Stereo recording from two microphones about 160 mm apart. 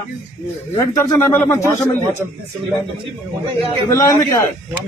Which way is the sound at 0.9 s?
15° left (ahead or behind).